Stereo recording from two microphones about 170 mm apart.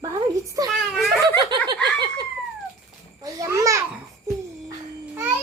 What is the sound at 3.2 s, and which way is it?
Speech, 20° right (ahead or behind).